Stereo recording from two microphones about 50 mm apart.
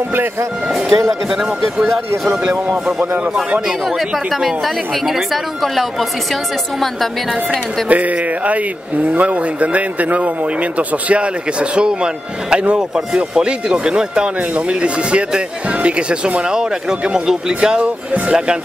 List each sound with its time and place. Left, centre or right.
0.7 s speech: centre
4.3 s a woman's voice: centre
7.9 s speech: right